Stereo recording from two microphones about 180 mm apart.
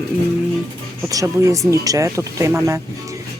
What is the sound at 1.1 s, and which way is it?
Speech, 20° right (ahead or behind).